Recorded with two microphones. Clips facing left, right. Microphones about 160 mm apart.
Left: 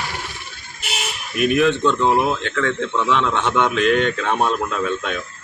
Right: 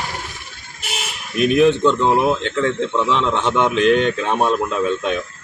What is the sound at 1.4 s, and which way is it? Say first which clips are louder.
A man's voice: right 3 dB; 20° right (ahead or behind).